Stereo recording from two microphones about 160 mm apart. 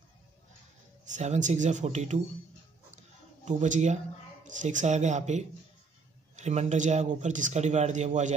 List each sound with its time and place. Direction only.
1.1 s speech: 45° right (ahead or behind)
3.4 s speech: 50° right (ahead or behind)